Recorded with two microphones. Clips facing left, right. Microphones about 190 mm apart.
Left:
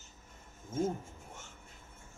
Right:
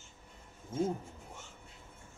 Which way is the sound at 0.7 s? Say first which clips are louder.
Even; 45° left (ahead or behind).